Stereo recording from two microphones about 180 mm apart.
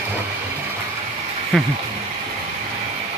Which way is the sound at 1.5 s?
Centre (ahead or behind).